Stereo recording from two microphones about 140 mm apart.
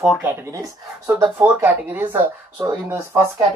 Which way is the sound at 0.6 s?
15° right (ahead or behind).